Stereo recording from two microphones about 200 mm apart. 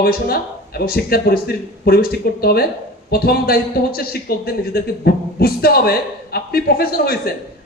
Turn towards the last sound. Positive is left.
turn(degrees=50)  # may be behind; listen again after turning